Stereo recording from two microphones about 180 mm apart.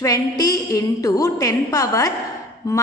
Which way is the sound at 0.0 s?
20° left (ahead or behind).